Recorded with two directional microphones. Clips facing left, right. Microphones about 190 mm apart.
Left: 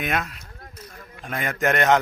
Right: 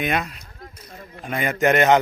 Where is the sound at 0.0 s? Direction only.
Centre (ahead or behind).